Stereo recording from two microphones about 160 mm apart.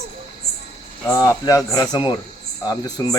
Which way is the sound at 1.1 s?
20° left (ahead or behind).